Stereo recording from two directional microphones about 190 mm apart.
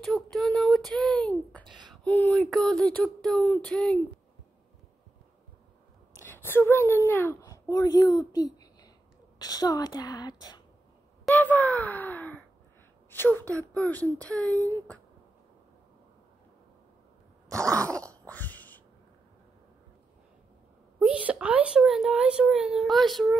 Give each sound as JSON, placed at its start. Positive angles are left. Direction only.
{"t": 0.0, "sound": "a sound", "side_deg": 0}
{"t": 1.9, "sound": "a child's voice", "side_deg": 5}
{"t": 6.2, "sound": "a woman's voice", "side_deg": 10}
{"t": 11.3, "sound": "a sound", "side_deg": 10}
{"t": 13.1, "sound": "speech", "side_deg": 10}
{"t": 17.5, "sound": "throat clearing", "side_deg": -15}
{"t": 18.2, "sound": "throat clearing", "side_deg": 10}
{"t": 21.0, "sound": "a child's voice", "side_deg": -5}